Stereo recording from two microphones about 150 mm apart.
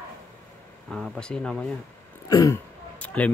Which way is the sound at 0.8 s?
5° left (ahead or behind).